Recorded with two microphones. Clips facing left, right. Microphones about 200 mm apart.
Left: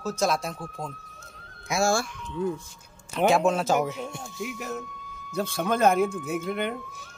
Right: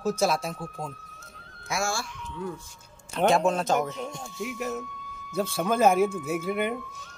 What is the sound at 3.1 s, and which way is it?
A man's voice, 5° left (ahead or behind).